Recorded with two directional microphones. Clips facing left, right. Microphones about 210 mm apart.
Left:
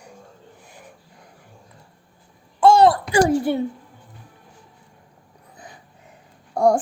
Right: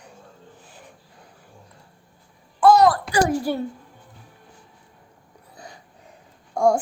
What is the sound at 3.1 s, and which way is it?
Speech, 25° left (ahead or behind).